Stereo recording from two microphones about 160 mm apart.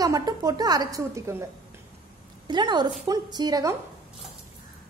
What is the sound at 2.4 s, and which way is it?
A woman's voice, 25° right (ahead or behind).